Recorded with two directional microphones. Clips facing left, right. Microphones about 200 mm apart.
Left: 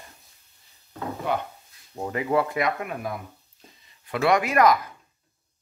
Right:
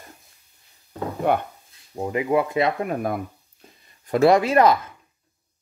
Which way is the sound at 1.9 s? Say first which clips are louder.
Right 3 dB; 15° right (ahead or behind).